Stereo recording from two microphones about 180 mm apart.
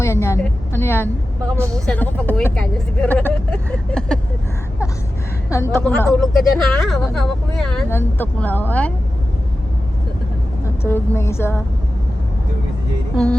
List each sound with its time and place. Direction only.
0.0 s speech: 15° left (ahead or behind)
5.5 s a woman's voice: 15° left (ahead or behind)
10.8 s speech: 10° left (ahead or behind)